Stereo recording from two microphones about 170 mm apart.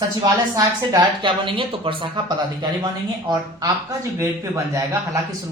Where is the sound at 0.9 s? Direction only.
30° right (ahead or behind).